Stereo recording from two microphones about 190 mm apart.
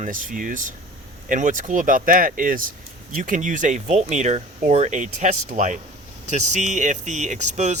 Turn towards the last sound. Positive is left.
turn(degrees=-35)  # may be behind; listen again after turning